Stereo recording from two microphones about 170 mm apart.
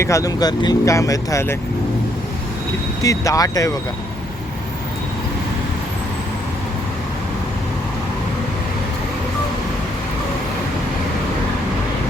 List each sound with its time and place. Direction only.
0.0 s speech: 20° left (ahead or behind)
3.0 s speech: 20° left (ahead or behind)